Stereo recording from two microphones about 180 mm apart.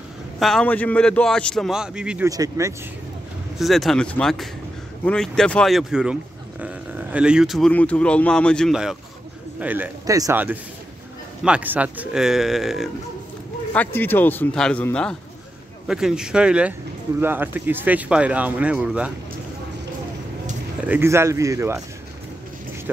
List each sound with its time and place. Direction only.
0.4 s speech: centre (ahead or behind)
2.2 s speech: 20° right (ahead or behind)
3.5 s speech: centre (ahead or behind)
13.7 s speech: 10° left (ahead or behind); by 19.1 s 5° right (ahead or behind)
20.8 s speech: 10° right (ahead or behind)